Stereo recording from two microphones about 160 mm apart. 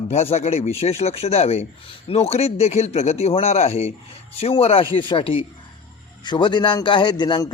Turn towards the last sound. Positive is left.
turn(degrees=25)  # may be behind; listen again after turning